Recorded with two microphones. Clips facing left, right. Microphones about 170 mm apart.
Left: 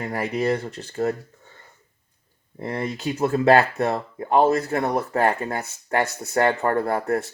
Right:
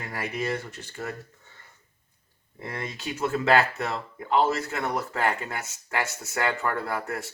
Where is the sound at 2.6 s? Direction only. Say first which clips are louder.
Left 8 dB; 25° left (ahead or behind).